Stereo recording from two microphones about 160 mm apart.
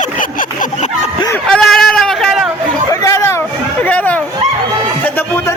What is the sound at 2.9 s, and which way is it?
Chatter, 20° left (ahead or behind).